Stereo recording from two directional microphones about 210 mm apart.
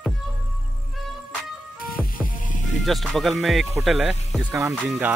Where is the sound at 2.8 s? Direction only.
Centre (ahead or behind).